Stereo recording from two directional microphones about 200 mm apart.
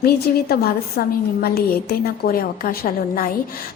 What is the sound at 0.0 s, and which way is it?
A woman's voice, 50° left (ahead or behind).